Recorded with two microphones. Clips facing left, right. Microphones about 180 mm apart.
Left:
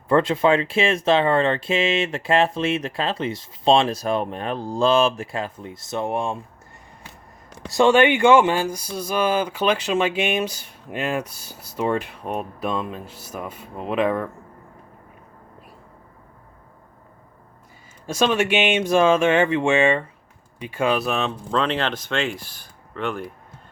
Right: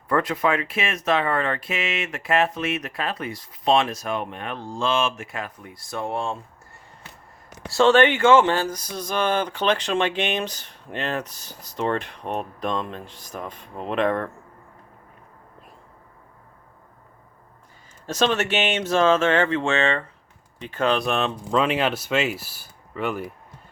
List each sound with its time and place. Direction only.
0.1 s speech: 25° left (ahead or behind)
7.7 s speech: 15° left (ahead or behind)
18.0 s speech: 10° left (ahead or behind); by 23.2 s 5° right (ahead or behind)